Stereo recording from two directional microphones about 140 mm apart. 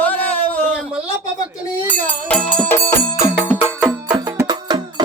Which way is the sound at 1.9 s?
10° left (ahead or behind).